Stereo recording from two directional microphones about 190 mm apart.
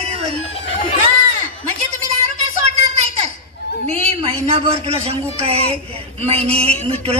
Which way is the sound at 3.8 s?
35° right (ahead or behind).